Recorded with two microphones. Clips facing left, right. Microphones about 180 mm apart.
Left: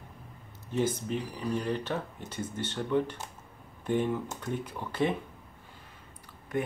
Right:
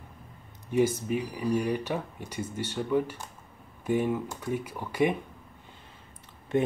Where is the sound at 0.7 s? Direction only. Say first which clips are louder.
Right 4 dB; 10° right (ahead or behind).